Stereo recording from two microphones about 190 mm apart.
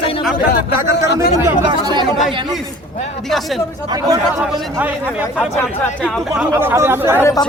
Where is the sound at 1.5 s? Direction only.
25° right (ahead or behind).